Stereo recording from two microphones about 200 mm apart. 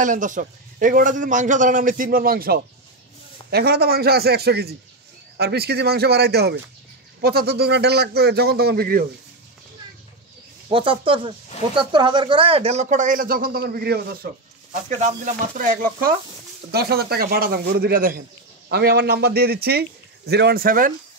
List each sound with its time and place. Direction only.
0.0 s a man's voice: 40° right (ahead or behind)
10.7 s a man's voice: 25° right (ahead or behind); by 20.9 s 45° right (ahead or behind)